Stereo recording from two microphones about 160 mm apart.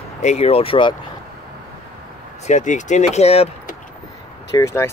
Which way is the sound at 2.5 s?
50° left (ahead or behind).